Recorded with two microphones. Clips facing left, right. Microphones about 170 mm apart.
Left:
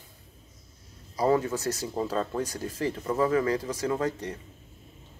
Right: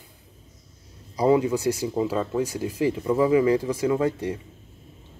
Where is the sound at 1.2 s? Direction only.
15° right (ahead or behind).